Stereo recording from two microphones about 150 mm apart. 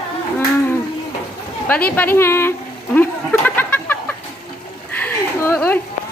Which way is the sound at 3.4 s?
15° left (ahead or behind).